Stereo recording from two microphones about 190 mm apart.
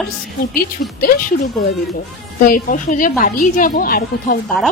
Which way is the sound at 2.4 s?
45° left (ahead or behind).